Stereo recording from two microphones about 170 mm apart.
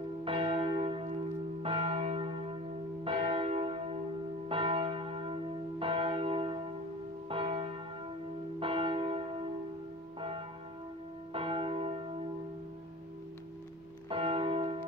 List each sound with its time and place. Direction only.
0.2 s church bell: 35° right (ahead or behind)
11.3 s church bell: 30° right (ahead or behind)
14.0 s church bell: 35° right (ahead or behind)